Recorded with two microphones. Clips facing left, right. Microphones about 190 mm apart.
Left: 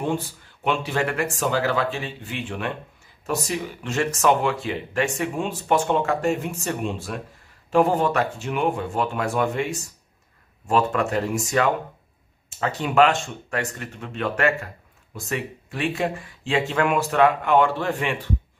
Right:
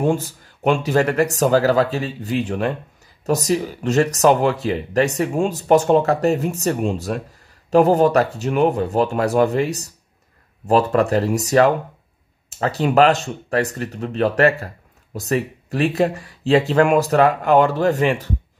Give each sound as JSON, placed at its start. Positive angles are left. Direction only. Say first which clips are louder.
{"t": 0.0, "sound": "speech", "louder": "right 6 dB", "side_deg": -45}